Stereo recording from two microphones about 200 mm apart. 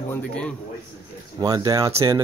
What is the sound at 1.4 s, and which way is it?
Speech, 20° right (ahead or behind).